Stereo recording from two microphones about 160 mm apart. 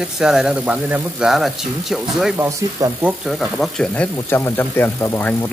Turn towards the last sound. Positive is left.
turn(degrees=15)  # may be behind; listen again after turning